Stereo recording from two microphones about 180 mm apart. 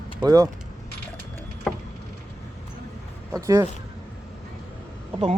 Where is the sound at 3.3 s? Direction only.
15° right (ahead or behind).